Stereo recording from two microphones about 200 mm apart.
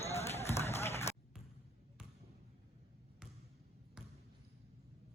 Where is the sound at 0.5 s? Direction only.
15° left (ahead or behind).